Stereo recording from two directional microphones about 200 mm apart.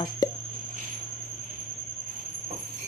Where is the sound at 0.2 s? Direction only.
20° left (ahead or behind).